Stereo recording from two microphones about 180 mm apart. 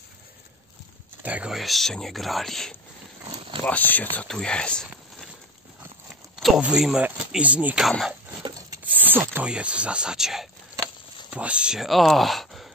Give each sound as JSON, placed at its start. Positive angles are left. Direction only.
{"t": 1.2, "sound": "speech", "side_deg": -5}
{"t": 3.3, "sound": "a sound", "side_deg": -30}
{"t": 3.6, "sound": "speech", "side_deg": 10}
{"t": 6.4, "sound": "speech", "side_deg": -5}
{"t": 8.4, "sound": "rub", "side_deg": -25}
{"t": 8.8, "sound": "speech", "side_deg": -10}